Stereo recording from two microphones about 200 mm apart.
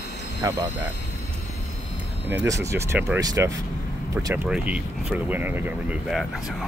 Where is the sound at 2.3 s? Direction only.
15° right (ahead or behind).